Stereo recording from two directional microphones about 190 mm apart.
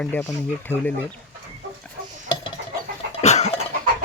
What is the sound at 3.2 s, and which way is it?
Cough, 35° left (ahead or behind).